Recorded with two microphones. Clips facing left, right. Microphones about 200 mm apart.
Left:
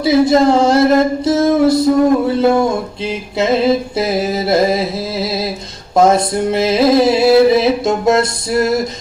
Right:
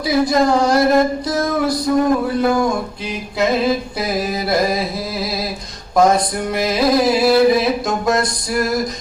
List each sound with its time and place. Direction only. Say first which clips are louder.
0.0 s music: left 5 dB; 25° left (ahead or behind)